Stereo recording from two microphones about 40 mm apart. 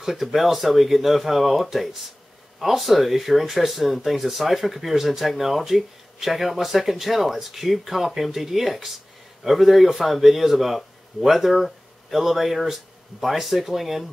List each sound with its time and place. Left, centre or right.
0.0 s speech: centre